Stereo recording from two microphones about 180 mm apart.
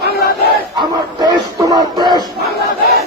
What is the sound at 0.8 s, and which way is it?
Music, 25° right (ahead or behind).